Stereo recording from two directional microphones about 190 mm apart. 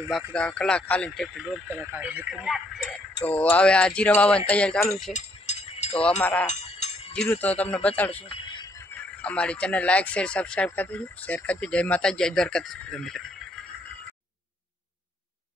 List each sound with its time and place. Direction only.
0.3 s speech: 5° left (ahead or behind)
5.1 s a sound: 35° left (ahead or behind)
6.2 s speech: 10° left (ahead or behind)